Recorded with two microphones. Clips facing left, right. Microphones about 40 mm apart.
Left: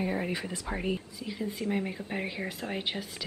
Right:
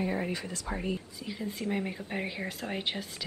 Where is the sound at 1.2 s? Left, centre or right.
Centre.